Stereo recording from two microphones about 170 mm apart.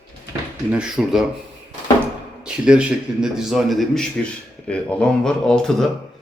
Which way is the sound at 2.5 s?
5° right (ahead or behind).